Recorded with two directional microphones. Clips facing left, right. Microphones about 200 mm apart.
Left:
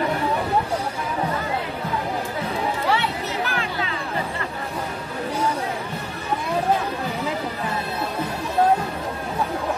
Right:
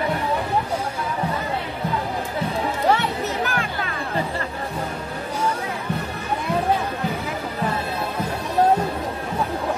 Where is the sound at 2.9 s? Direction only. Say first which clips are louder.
Right 3 dB; 45° right (ahead or behind).